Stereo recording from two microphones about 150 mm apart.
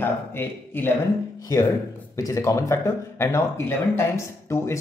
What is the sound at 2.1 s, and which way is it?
Speech, 20° left (ahead or behind).